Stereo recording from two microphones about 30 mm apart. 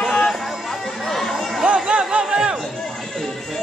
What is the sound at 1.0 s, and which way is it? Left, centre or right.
Chatter, centre.